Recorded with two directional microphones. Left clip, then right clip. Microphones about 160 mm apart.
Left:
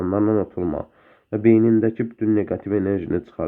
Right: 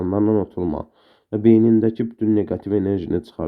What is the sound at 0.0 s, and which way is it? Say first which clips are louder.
Speech: right 1 dB; 15° right (ahead or behind).